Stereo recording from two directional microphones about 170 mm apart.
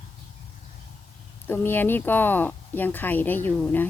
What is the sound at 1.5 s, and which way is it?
Speech, 10° left (ahead or behind).